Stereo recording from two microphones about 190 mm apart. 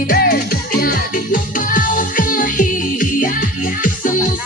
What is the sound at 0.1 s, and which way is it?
Music, 50° left (ahead or behind).